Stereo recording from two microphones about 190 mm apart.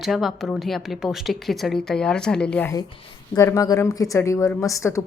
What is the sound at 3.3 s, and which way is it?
A woman's voice, 15° left (ahead or behind).